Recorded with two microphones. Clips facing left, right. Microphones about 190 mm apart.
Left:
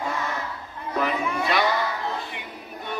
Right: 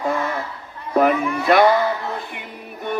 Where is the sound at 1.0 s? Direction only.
55° right (ahead or behind).